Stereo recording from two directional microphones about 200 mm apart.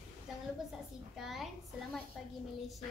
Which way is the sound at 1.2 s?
Centre (ahead or behind).